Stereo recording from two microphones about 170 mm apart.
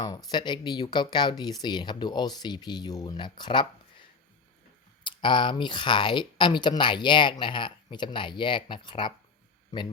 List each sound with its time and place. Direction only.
0.0 s speech: 20° left (ahead or behind)
5.0 s speech: 30° left (ahead or behind)